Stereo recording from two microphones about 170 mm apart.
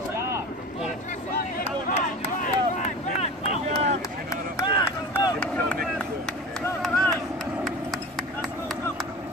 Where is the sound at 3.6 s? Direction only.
45° right (ahead or behind).